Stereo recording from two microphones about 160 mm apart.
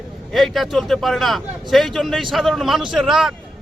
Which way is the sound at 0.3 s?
Centre (ahead or behind).